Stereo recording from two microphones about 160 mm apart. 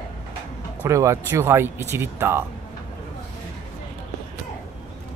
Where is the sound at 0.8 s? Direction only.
20° right (ahead or behind).